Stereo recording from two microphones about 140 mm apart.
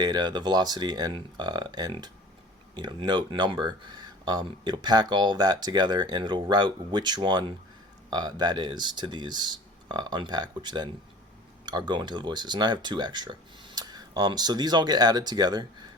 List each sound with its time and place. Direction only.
0.0 s speech: 30° right (ahead or behind)